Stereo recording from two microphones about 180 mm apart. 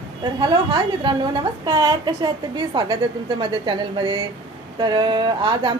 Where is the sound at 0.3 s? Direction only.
25° right (ahead or behind).